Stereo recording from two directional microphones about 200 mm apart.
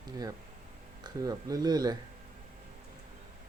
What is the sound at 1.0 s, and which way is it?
Speech, 20° right (ahead or behind).